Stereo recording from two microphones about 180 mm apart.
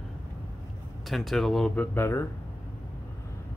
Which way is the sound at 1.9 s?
15° left (ahead or behind).